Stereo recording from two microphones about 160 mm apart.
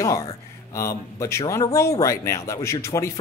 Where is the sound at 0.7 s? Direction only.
20° left (ahead or behind).